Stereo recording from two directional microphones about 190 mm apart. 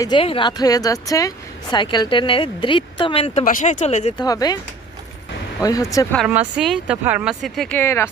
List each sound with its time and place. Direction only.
0.0 s speech: 25° left (ahead or behind)
3.4 s speech: 40° left (ahead or behind)
4.2 s speech: 20° left (ahead or behind)
5.6 s speech: 20° left (ahead or behind)
6.1 s speech: 5° right (ahead or behind); by 8.1 s 15° left (ahead or behind)